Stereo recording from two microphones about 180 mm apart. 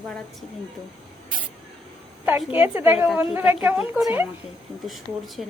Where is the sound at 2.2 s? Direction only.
10° right (ahead or behind).